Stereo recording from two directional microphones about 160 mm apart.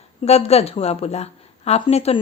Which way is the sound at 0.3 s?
40° left (ahead or behind).